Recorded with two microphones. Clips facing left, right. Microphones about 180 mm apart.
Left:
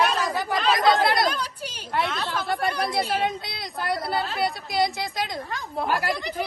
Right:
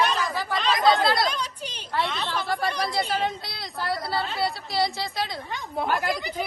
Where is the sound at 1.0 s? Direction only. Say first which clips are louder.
Left 1 dB; 20° left (ahead or behind).